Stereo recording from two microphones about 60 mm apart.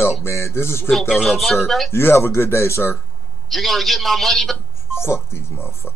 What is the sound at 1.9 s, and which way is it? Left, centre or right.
Speech, left.